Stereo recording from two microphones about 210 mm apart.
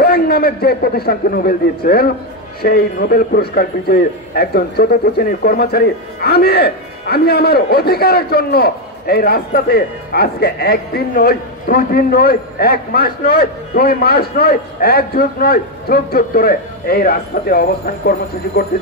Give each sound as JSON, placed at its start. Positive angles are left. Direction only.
{"t": 0.0, "sound": "a man's voice", "side_deg": 45}